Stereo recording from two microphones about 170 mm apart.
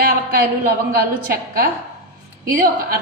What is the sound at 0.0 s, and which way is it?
A man's voice, 60° right (ahead or behind).